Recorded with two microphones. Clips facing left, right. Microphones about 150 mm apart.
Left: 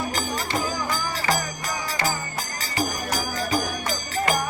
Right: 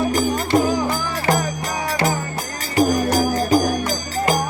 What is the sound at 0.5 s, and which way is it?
Music, 55° right (ahead or behind).